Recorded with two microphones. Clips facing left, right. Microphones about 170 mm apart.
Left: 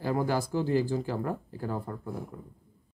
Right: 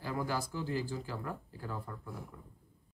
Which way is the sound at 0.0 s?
50° left (ahead or behind).